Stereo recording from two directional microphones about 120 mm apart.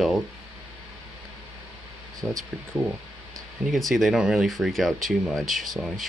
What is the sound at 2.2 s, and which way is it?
Speech, centre (ahead or behind).